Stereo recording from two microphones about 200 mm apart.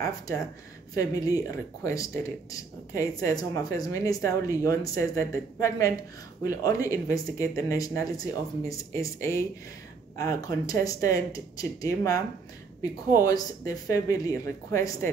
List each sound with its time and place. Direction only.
0.9 s speech: 15° left (ahead or behind)